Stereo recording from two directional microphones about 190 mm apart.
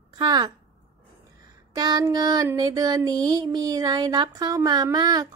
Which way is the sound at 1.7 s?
20° right (ahead or behind).